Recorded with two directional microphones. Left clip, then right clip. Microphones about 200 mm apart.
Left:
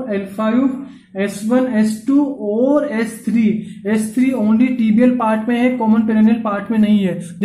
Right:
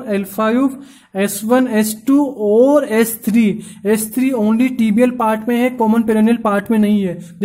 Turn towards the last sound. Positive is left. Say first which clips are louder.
# left 1 dB
turn(degrees=-25)  # may be behind; listen again after turning